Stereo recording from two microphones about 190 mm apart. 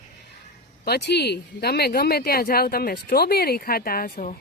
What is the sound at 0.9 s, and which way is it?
Speech, 60° left (ahead or behind).